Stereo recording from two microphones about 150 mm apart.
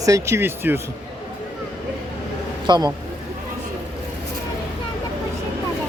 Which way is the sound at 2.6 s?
30° right (ahead or behind).